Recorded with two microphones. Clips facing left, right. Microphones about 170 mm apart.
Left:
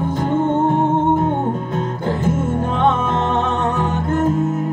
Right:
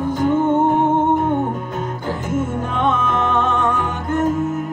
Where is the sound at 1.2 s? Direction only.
30° left (ahead or behind).